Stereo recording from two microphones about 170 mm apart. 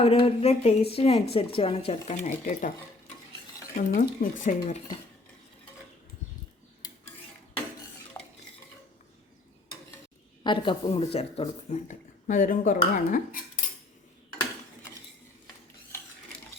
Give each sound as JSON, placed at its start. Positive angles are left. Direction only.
{"t": 0.0, "sound": "a woman's voice", "side_deg": 35}
{"t": 3.8, "sound": "speech", "side_deg": 50}
{"t": 8.1, "sound": "stir", "side_deg": 15}
{"t": 10.4, "sound": "speech", "side_deg": 30}